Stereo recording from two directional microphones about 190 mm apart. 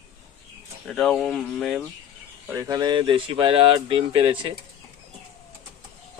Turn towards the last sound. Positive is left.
turn(degrees=-25)  # may be behind; listen again after turning